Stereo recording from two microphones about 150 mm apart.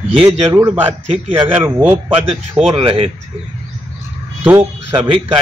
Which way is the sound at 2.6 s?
35° right (ahead or behind).